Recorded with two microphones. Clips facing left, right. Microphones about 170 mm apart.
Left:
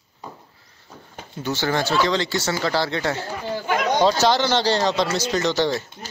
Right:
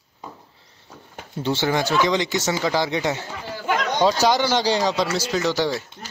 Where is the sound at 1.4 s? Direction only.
25° right (ahead or behind); by 5.8 s 5° right (ahead or behind).